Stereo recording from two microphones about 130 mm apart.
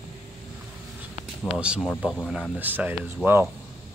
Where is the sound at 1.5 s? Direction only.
10° right (ahead or behind).